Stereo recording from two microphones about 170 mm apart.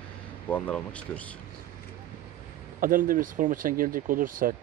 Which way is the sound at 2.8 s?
55° right (ahead or behind).